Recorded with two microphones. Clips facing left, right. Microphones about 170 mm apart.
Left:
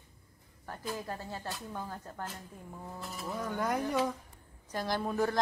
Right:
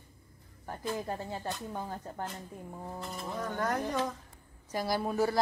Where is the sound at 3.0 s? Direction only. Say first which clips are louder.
Even; 5° left (ahead or behind).